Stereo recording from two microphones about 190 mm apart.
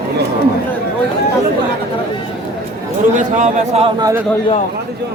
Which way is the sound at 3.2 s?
40° right (ahead or behind).